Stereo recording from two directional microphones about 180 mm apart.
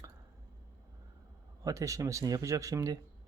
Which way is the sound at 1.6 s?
20° right (ahead or behind).